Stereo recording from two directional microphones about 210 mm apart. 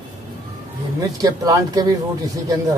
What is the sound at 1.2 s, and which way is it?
Speech, 15° right (ahead or behind).